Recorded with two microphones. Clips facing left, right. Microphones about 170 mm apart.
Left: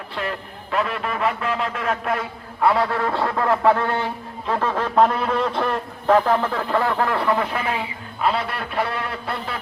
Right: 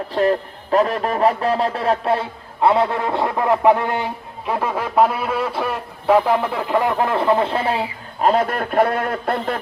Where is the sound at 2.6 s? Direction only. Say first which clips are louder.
Right 3 dB; 20° right (ahead or behind).